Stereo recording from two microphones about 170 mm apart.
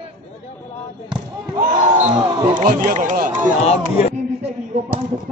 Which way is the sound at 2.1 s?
25° right (ahead or behind).